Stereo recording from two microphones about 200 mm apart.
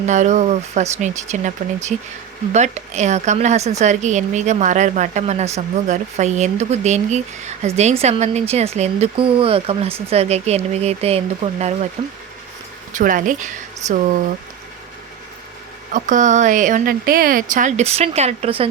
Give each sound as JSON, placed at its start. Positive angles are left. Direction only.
{"t": 0.0, "sound": "a woman's voice", "side_deg": -35}
{"t": 15.9, "sound": "a woman's voice", "side_deg": -40}